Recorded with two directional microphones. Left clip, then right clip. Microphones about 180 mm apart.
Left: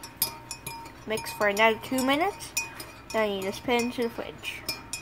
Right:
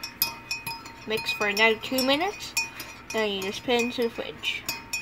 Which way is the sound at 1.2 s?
10° right (ahead or behind).